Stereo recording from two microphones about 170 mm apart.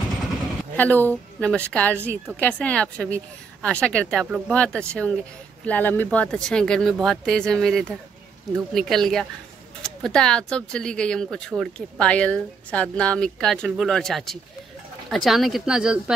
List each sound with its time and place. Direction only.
0.7 s a woman's voice: 10° left (ahead or behind)
2.0 s a woman's voice: 15° right (ahead or behind)
2.3 s a woman's voice: 5° left (ahead or behind)